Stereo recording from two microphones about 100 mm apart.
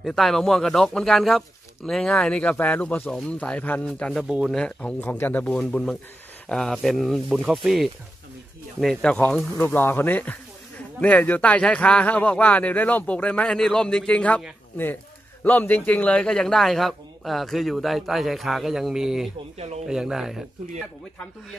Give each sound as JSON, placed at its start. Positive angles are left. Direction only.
{"t": 0.0, "sound": "a man's voice", "side_deg": 5}
{"t": 5.0, "sound": "a man's voice", "side_deg": 20}
{"t": 8.8, "sound": "speech", "side_deg": 10}
{"t": 15.4, "sound": "a man's voice", "side_deg": 20}